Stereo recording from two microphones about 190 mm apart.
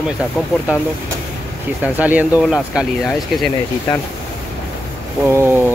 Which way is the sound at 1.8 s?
10° right (ahead or behind).